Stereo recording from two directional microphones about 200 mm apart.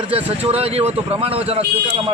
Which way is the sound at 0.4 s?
30° right (ahead or behind).